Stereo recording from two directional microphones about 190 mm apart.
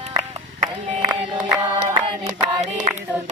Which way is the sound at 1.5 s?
10° right (ahead or behind).